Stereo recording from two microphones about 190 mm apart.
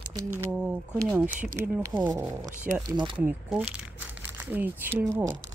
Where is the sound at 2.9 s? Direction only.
25° right (ahead or behind).